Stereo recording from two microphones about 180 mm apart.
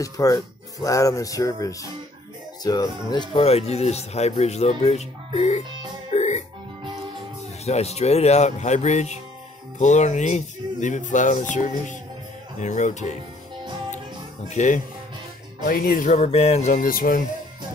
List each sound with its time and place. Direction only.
0.0 s speech: 20° left (ahead or behind); by 5.6 s 35° left (ahead or behind)
6.1 s music: 40° left (ahead or behind)
7.6 s speech: 35° left (ahead or behind)
14.5 s speech: 40° left (ahead or behind)
15.6 s speech: 55° left (ahead or behind)